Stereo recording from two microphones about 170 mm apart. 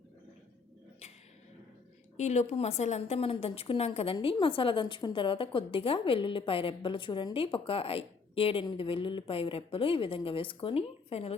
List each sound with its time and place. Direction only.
2.1 s a woman's voice: 40° left (ahead or behind)